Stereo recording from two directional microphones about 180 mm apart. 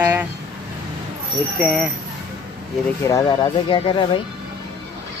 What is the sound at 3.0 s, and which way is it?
Speech, 20° left (ahead or behind).